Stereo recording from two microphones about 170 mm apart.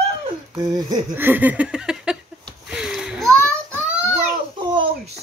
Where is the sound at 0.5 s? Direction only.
25° right (ahead or behind).